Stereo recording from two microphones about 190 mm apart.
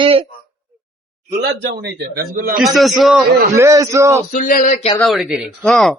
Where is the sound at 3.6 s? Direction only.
15° right (ahead or behind).